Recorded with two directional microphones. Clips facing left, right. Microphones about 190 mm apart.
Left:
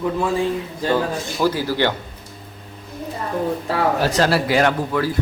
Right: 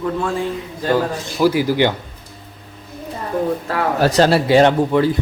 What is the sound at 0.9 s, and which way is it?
A man's voice, 10° right (ahead or behind).